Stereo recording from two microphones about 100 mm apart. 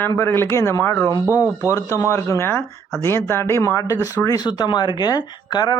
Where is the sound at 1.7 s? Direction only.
30° left (ahead or behind).